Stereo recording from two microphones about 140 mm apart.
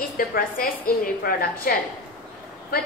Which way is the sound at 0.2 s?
90° left.